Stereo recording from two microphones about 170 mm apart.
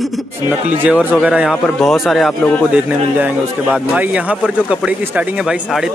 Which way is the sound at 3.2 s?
10° right (ahead or behind).